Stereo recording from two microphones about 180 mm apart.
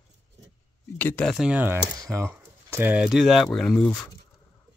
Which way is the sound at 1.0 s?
10° left (ahead or behind).